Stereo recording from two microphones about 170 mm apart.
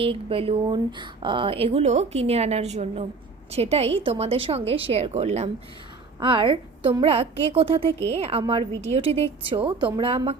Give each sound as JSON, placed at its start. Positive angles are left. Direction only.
{"t": 0.0, "sound": "speech", "side_deg": -30}
{"t": 6.1, "sound": "a woman's voice", "side_deg": -30}